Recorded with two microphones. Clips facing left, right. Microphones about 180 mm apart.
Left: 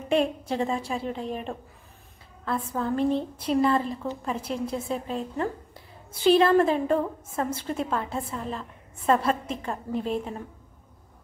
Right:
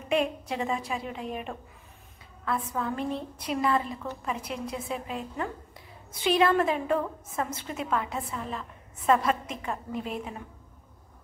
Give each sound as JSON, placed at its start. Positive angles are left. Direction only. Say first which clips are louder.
{"t": 0.1, "sound": "a woman's voice", "louder": "left 3 dB", "side_deg": 30}